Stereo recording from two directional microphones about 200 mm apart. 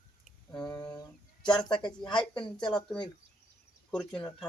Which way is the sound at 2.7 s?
5° left (ahead or behind).